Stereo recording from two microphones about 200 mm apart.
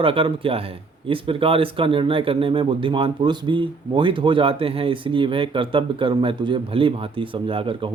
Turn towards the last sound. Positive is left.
turn(degrees=-25)  # may be behind; listen again after turning